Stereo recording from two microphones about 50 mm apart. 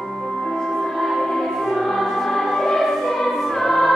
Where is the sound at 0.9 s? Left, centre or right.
Centre.